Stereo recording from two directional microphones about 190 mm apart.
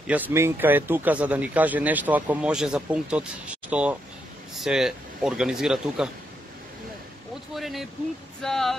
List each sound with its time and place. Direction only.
0.0 s speech: 10° right (ahead or behind)
7.5 s speech: centre (ahead or behind)